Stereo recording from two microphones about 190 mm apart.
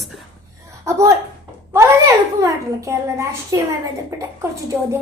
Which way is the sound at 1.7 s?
15° right (ahead or behind).